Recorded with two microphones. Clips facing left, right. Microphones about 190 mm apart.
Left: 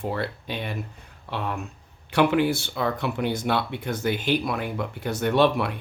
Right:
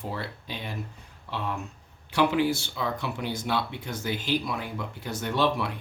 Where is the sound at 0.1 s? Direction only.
60° left (ahead or behind).